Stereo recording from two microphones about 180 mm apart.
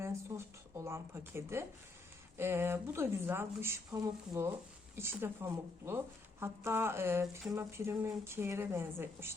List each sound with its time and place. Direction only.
0.3 s speech: 15° right (ahead or behind)